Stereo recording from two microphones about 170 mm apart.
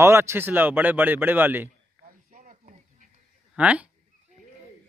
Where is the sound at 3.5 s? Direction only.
5° right (ahead or behind).